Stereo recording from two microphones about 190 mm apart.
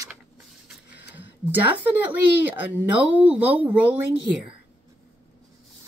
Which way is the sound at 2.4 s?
10° right (ahead or behind).